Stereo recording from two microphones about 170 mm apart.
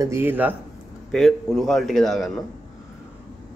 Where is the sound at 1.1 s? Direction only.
Centre (ahead or behind).